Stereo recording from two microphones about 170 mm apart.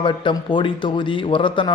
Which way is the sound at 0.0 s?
30° left (ahead or behind).